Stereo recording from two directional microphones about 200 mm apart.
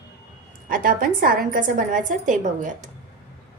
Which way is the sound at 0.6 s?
45° right (ahead or behind).